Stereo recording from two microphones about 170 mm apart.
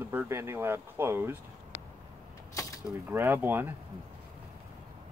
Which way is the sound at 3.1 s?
10° right (ahead or behind).